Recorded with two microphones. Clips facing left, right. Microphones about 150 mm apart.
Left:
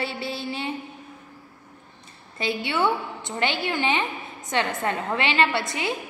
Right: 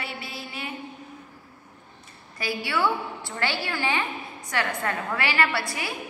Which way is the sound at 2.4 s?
25° left (ahead or behind).